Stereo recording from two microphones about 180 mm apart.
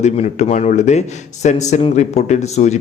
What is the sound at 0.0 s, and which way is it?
Speech, 40° left (ahead or behind).